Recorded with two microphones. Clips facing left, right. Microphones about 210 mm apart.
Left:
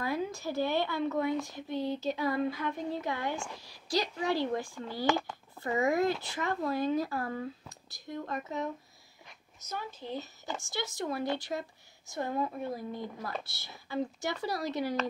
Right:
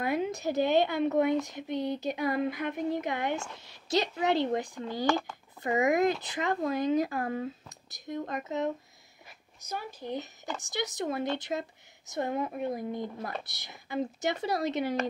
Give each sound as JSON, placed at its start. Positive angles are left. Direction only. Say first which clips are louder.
{"t": 0.0, "sound": "speech", "louder": "right 4 dB", "side_deg": -20}
{"t": 1.4, "sound": "a sound", "louder": "right 2 dB", "side_deg": -20}
{"t": 2.7, "sound": "speech", "louder": "right 4 dB", "side_deg": -20}
{"t": 5.0, "sound": "speech", "louder": "right 1 dB", "side_deg": 20}
{"t": 5.6, "sound": "a sound", "louder": "right 3 dB", "side_deg": -20}
{"t": 6.7, "sound": "speech", "louder": "right 2 dB", "side_deg": -20}
{"t": 9.6, "sound": "a sound", "louder": "right 2 dB", "side_deg": -15}
{"t": 10.6, "sound": "speech", "louder": "right 4 dB", "side_deg": -20}
{"t": 12.6, "sound": "speech", "louder": "right 4 dB", "side_deg": -20}